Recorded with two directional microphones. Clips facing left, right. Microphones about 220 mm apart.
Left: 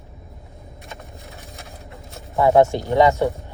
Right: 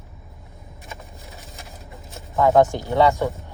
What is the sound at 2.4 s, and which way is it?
Speech, 15° left (ahead or behind).